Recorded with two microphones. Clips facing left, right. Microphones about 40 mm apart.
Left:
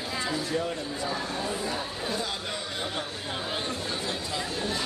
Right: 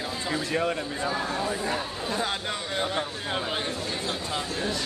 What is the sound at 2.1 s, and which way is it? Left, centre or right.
Speech, right.